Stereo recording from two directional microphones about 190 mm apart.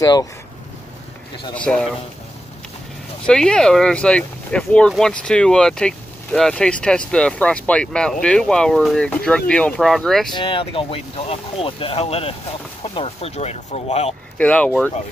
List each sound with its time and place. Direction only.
0.0 s speech: 20° left (ahead or behind)
1.5 s speech: 5° left (ahead or behind)
3.3 s speech: 5° left (ahead or behind)
10.3 s speech: 30° left (ahead or behind)
14.4 s speech: 5° left (ahead or behind)